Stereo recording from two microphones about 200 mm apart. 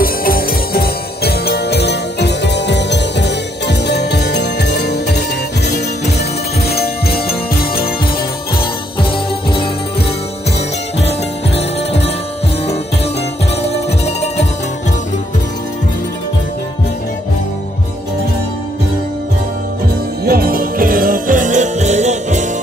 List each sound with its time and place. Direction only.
0.0 s music: 45° left (ahead or behind)
6.7 s music: 50° left (ahead or behind)
11.0 s music: 30° left (ahead or behind)
13.6 s music: 30° left (ahead or behind)
20.2 s jingle bell: 45° right (ahead or behind)